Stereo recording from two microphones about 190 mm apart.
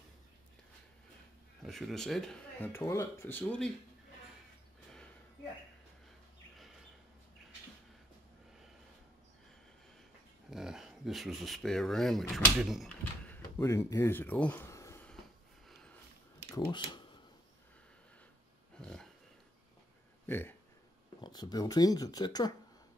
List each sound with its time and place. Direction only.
1.6 s speech: centre (ahead or behind)
10.5 s speech: centre (ahead or behind); by 15.0 s 15° left (ahead or behind)
16.5 s speech: 20° left (ahead or behind)
18.8 s dog: 5° left (ahead or behind)
20.2 s speech: 10° left (ahead or behind)
21.2 s speech: 20° left (ahead or behind)